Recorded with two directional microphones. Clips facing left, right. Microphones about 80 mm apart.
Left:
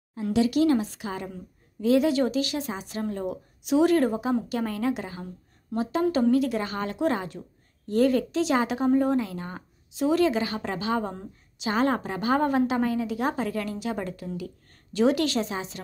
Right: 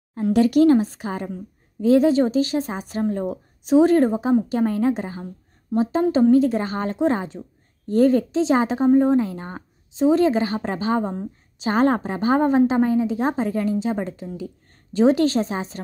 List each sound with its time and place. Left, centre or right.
0.1 s a woman's voice: right
11.6 s a woman's voice: right